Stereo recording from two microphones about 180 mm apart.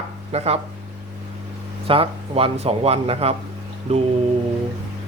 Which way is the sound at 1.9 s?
30° right (ahead or behind).